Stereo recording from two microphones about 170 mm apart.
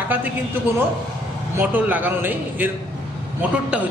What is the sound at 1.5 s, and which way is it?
A man's voice, 10° right (ahead or behind).